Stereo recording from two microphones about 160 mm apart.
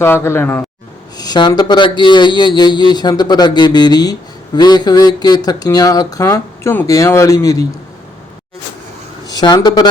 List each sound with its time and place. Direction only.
0.0 s a man's voice: 15° left (ahead or behind)
1.1 s speech: 25° left (ahead or behind)
9.2 s speech: 25° left (ahead or behind)